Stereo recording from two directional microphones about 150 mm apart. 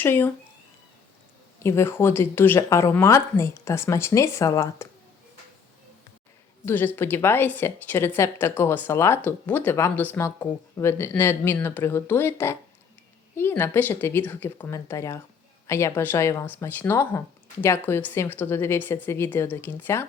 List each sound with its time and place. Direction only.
0.0 s a woman's voice: 15° left (ahead or behind)
1.5 s a woman's voice: 15° left (ahead or behind)
6.7 s a woman's voice: 15° left (ahead or behind)